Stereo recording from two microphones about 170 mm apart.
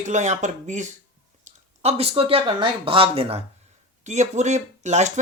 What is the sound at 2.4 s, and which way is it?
Speech, 30° right (ahead or behind).